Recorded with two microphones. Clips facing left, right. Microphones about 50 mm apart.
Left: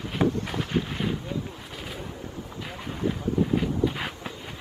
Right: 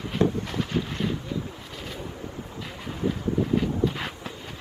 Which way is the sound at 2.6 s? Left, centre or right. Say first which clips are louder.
Even; centre.